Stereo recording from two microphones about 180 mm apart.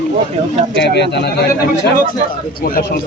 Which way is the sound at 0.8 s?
70° left (ahead or behind).